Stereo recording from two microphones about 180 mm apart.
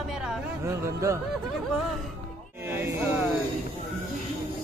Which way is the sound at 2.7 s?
15° right (ahead or behind).